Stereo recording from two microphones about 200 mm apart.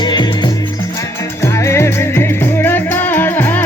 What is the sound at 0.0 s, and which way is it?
Music, 20° left (ahead or behind).